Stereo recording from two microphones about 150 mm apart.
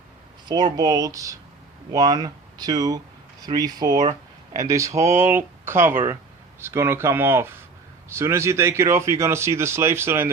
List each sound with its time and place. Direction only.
0.4 s speech: 30° right (ahead or behind)